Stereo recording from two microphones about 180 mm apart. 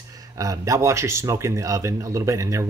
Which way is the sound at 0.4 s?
20° right (ahead or behind).